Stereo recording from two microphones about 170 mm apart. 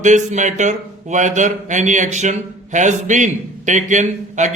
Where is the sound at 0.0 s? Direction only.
45° right (ahead or behind).